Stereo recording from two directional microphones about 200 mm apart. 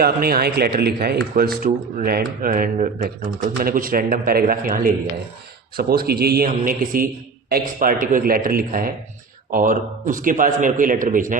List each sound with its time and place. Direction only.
0.0 s speech: 50° right (ahead or behind)